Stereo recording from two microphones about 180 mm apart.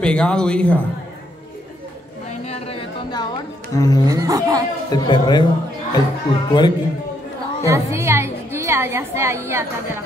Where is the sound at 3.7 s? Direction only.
20° left (ahead or behind).